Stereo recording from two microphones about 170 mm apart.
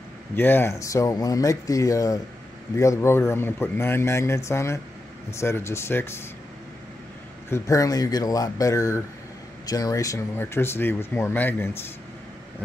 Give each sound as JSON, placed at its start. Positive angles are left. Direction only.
{"t": 0.4, "sound": "speech", "side_deg": 15}
{"t": 7.4, "sound": "speech", "side_deg": 15}